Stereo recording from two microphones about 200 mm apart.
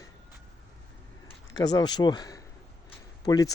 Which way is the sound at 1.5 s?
20° left (ahead or behind).